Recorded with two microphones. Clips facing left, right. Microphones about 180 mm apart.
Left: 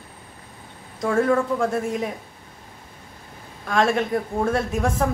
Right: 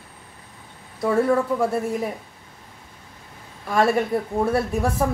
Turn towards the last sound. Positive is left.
turn(degrees=-5)  # may be behind; listen again after turning